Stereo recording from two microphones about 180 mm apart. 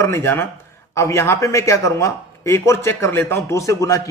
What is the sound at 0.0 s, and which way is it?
A man's voice, 15° left (ahead or behind).